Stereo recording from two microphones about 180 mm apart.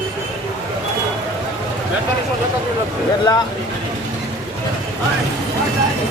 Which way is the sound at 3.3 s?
20° left (ahead or behind).